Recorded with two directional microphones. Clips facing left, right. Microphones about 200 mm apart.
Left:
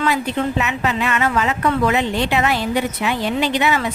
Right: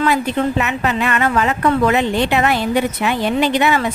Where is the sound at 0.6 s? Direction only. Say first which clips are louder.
Right 2 dB; 55° right (ahead or behind).